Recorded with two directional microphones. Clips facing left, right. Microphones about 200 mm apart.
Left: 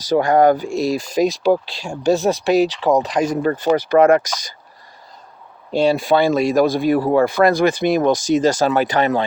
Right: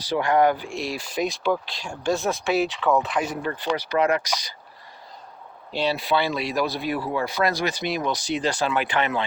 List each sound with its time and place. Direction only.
0.0 s speech: 45° left (ahead or behind)
5.7 s speech: 45° left (ahead or behind)